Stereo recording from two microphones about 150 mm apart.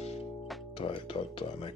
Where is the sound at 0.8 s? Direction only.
35° left (ahead or behind).